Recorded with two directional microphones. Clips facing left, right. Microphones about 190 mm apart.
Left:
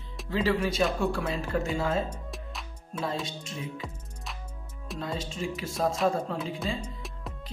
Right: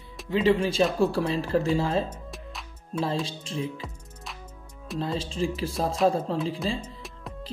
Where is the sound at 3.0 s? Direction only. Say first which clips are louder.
Right 4 dB; 30° right (ahead or behind).